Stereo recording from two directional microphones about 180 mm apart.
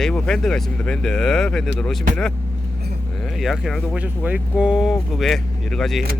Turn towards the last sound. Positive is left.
turn(degrees=0)  # may be behind; listen again after turning